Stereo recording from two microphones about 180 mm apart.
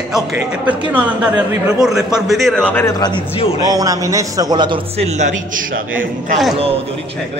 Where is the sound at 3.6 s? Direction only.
20° right (ahead or behind); by 5.8 s 45° right (ahead or behind).